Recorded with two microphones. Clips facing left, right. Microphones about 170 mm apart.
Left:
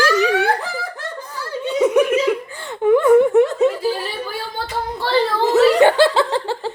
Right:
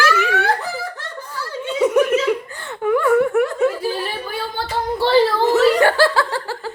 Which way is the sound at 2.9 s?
20° left (ahead or behind).